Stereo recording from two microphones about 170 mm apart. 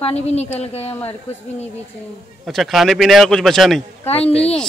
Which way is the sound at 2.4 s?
Centre (ahead or behind).